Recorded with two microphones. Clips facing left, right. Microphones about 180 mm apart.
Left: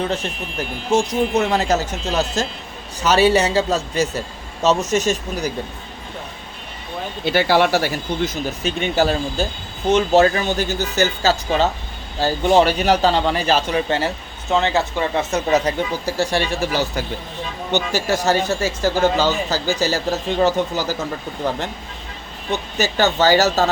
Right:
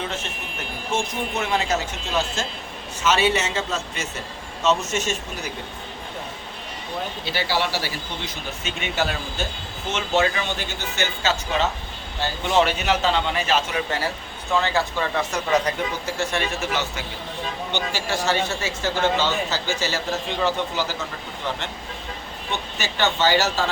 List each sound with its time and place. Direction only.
0.9 s speech: 40° left (ahead or behind)
7.3 s speech: 55° left (ahead or behind); by 14.1 s 30° left (ahead or behind)
14.5 s speech: 20° left (ahead or behind); by 21.6 s 40° left (ahead or behind)
22.8 s speech: 40° left (ahead or behind)